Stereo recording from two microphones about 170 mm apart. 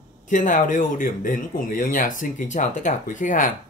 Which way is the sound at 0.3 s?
50° left (ahead or behind).